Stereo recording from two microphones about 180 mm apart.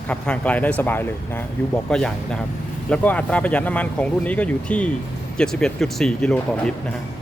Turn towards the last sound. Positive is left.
turn(degrees=5)  # may be behind; listen again after turning